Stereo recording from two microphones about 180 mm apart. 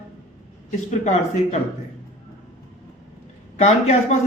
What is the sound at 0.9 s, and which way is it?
Speech, 40° left (ahead or behind).